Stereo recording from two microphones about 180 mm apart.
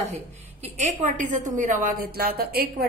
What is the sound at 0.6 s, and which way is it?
A woman's voice, 40° right (ahead or behind).